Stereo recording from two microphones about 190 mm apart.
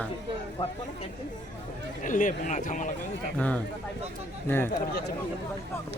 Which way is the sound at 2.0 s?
45° left (ahead or behind).